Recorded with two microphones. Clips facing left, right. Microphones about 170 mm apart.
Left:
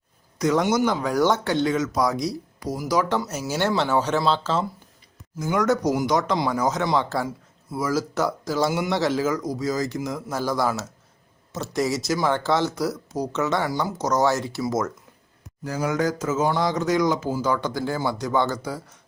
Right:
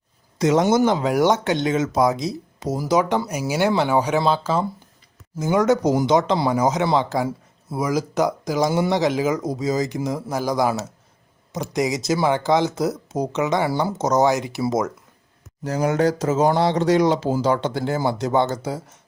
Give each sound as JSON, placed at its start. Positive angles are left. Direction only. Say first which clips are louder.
{"t": 0.3, "sound": "speech", "louder": "right 4 dB", "side_deg": -25}
{"t": 5.4, "sound": "speech", "louder": "right 4 dB", "side_deg": -20}
{"t": 15.7, "sound": "speech", "louder": "right 4 dB", "side_deg": -30}